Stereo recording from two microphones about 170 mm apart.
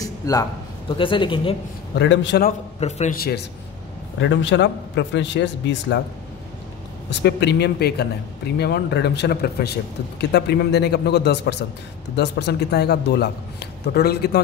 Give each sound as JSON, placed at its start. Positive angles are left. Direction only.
{"t": 0.0, "sound": "a man's voice", "side_deg": 20}
{"t": 2.0, "sound": "a man's voice", "side_deg": 90}
{"t": 2.8, "sound": "a man's voice", "side_deg": 40}
{"t": 4.2, "sound": "a man's voice", "side_deg": 90}
{"t": 7.1, "sound": "a man's voice", "side_deg": 85}